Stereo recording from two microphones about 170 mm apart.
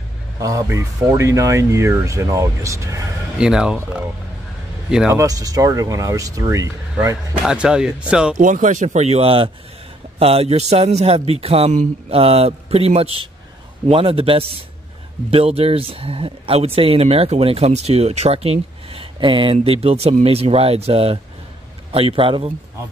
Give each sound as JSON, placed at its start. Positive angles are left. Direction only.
{"t": 0.4, "sound": "speech", "side_deg": -20}
{"t": 3.3, "sound": "speech", "side_deg": -5}
{"t": 7.4, "sound": "speech", "side_deg": -5}
{"t": 8.4, "sound": "speech", "side_deg": -50}